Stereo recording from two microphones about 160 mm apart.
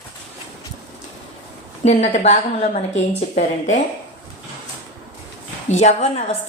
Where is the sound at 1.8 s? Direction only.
45° left (ahead or behind).